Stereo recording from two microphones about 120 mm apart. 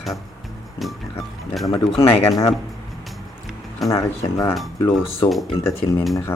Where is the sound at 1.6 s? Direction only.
25° left (ahead or behind).